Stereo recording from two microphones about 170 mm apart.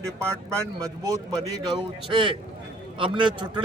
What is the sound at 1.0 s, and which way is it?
A man's voice, 20° right (ahead or behind).